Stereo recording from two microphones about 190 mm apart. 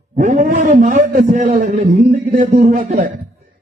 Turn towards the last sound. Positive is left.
turn(degrees=-45)  # may be behind; listen again after turning